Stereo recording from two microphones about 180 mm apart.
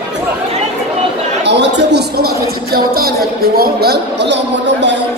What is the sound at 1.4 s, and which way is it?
Speech, 75° right (ahead or behind).